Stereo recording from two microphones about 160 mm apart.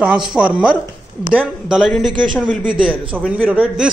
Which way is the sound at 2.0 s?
30° right (ahead or behind).